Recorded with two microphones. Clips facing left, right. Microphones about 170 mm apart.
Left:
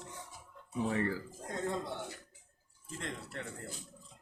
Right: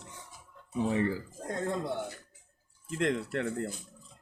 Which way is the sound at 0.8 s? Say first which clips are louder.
Right 4 dB; 20° right (ahead or behind).